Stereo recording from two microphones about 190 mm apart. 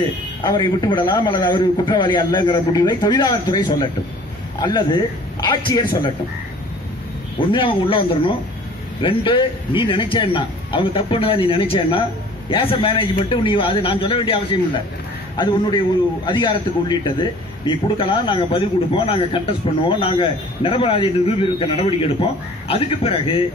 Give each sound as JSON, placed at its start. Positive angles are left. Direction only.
{"t": 0.4, "sound": "a man's voice", "side_deg": 20}
{"t": 7.3, "sound": "a man's voice", "side_deg": 25}